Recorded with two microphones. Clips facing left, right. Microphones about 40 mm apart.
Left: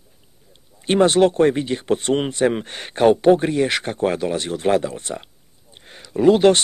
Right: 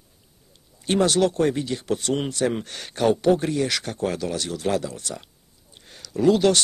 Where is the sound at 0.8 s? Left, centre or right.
Left.